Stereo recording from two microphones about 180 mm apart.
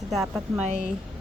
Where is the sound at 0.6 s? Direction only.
40° right (ahead or behind).